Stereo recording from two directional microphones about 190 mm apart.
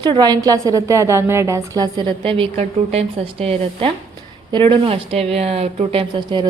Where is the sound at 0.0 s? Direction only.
20° right (ahead or behind).